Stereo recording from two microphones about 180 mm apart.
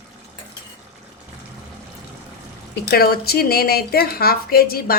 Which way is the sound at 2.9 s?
60° left (ahead or behind).